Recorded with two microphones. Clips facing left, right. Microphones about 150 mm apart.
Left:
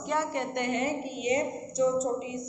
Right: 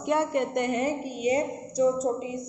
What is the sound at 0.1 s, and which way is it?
A woman's voice, 55° right (ahead or behind).